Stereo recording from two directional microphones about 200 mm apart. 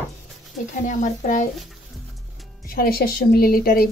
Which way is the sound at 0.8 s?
40° left (ahead or behind).